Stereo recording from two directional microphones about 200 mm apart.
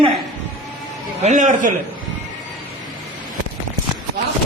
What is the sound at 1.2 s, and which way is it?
Speech, 40° right (ahead or behind).